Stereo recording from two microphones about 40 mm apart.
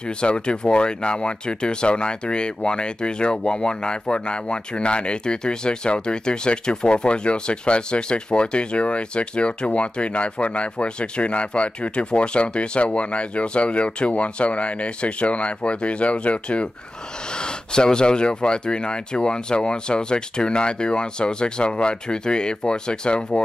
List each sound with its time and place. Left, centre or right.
0.2 s speech: left
17.4 s speech: left